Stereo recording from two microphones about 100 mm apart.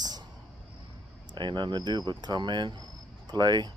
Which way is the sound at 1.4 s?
50° right (ahead or behind).